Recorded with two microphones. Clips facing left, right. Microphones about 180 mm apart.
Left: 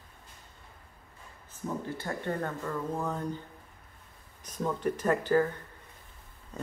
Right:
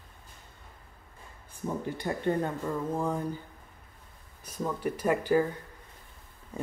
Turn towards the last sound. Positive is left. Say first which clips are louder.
# even
turn(degrees=-10)  # may be behind; listen again after turning